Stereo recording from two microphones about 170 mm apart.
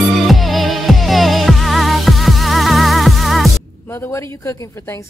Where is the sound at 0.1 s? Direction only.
Centre (ahead or behind).